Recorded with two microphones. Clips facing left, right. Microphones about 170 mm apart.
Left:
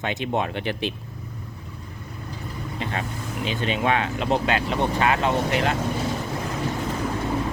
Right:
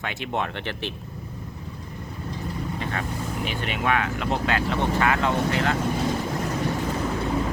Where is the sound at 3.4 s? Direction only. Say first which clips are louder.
Left 4 dB; 20° left (ahead or behind).